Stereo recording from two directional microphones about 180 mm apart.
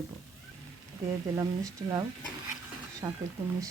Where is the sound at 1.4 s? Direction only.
20° right (ahead or behind).